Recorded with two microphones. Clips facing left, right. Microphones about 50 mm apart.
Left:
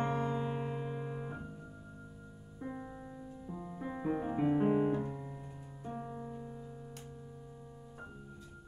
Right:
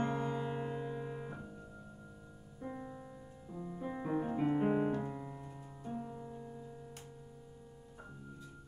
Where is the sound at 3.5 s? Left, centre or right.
Centre.